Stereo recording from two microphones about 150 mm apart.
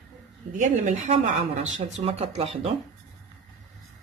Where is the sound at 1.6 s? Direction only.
50° right (ahead or behind).